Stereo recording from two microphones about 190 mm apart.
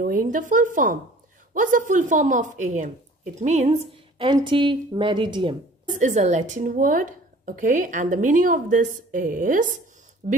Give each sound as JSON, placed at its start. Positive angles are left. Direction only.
{"t": 0.0, "sound": "a woman's voice", "side_deg": -45}
{"t": 5.9, "sound": "a woman's voice", "side_deg": -40}